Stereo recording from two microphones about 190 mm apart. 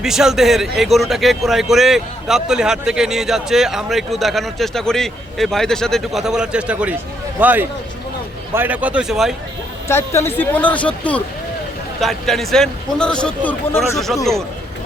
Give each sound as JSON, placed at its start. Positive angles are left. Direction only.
{"t": 0.0, "sound": "a man's voice", "side_deg": -5}
{"t": 9.9, "sound": "a man's voice", "side_deg": 15}